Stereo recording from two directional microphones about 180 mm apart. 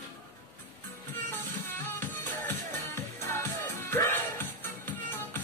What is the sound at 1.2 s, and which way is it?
Music, 10° left (ahead or behind).